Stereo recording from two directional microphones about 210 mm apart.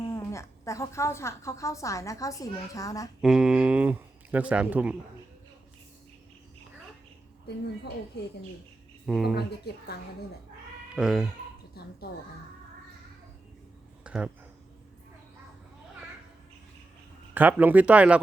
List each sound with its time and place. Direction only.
0.1 s a woman's voice: 15° left (ahead or behind)
3.2 s speech: centre (ahead or behind)
9.0 s speech: centre (ahead or behind)
9.3 s speech: 50° left (ahead or behind)
10.9 s speech: 5° right (ahead or behind)
14.0 s a sound: 5° right (ahead or behind)
17.3 s speech: 10° right (ahead or behind)